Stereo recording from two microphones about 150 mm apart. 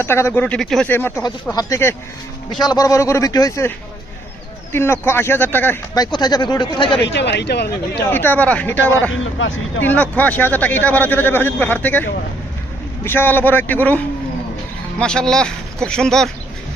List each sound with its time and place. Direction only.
0.0 s speech: 15° left (ahead or behind)
0.9 s speech: 15° left (ahead or behind)
4.7 s speech: 15° left (ahead or behind)
5.9 s speech: 25° left (ahead or behind)
7.4 s speech: 90° left
8.1 s speech: 15° left (ahead or behind)
13.1 s speech: 15° left (ahead or behind)